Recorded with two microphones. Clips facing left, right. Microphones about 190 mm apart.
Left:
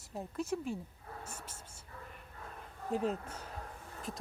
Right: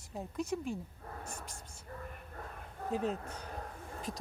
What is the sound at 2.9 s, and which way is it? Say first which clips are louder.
Speech: left 1 dB; 5° left (ahead or behind).